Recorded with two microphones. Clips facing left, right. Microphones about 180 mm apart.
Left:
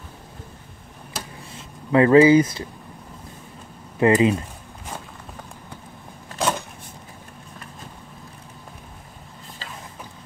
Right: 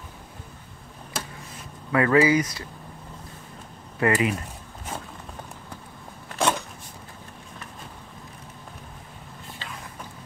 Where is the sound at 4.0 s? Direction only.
25° left (ahead or behind).